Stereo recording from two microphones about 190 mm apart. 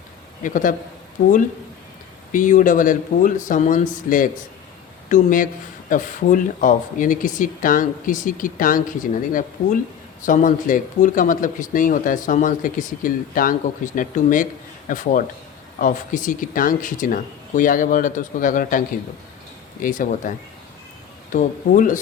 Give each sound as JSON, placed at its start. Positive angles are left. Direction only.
{"t": 0.4, "sound": "speech", "side_deg": 45}
{"t": 10.2, "sound": "speech", "side_deg": 45}
{"t": 19.8, "sound": "speech", "side_deg": 45}
{"t": 21.3, "sound": "speech", "side_deg": 45}